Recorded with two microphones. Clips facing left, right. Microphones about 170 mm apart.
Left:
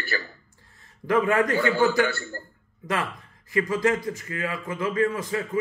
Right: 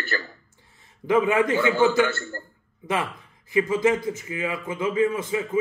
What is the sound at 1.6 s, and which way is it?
Speech, 20° right (ahead or behind).